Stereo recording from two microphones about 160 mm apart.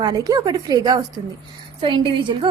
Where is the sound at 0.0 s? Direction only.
25° right (ahead or behind).